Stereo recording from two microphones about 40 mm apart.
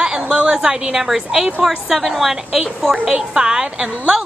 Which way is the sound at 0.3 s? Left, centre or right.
Centre.